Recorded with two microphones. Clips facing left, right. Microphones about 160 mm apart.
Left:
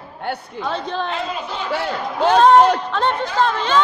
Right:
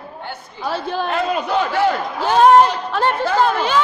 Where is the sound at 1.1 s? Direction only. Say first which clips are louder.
Right 7 dB; 60° right (ahead or behind).